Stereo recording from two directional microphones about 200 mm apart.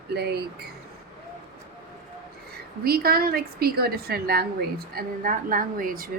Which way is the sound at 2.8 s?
50° right (ahead or behind).